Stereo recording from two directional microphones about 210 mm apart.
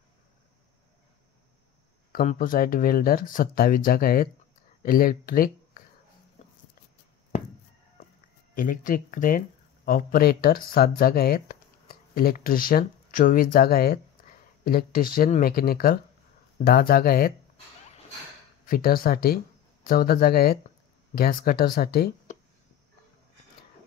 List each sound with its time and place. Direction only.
2.2 s speech: 40° left (ahead or behind)
8.5 s speech: 40° left (ahead or behind)
18.7 s speech: 45° left (ahead or behind)